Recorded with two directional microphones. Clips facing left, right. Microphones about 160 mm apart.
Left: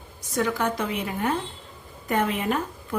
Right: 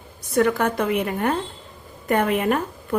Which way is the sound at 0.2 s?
60° right (ahead or behind).